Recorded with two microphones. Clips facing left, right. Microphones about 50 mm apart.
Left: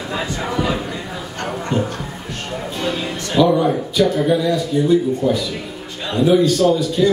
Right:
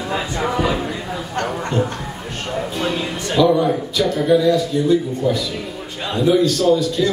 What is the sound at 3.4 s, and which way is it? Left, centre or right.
A man's voice, centre.